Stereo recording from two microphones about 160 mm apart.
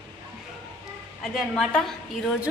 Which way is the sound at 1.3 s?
5° left (ahead or behind).